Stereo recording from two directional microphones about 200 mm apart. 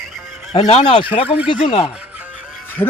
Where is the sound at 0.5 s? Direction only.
20° left (ahead or behind).